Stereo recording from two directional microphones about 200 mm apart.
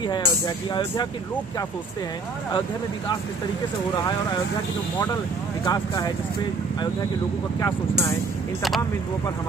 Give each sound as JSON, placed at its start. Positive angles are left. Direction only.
{"t": 0.0, "sound": "speech", "side_deg": 20}
{"t": 5.7, "sound": "speech", "side_deg": 20}
{"t": 7.6, "sound": "speech", "side_deg": 15}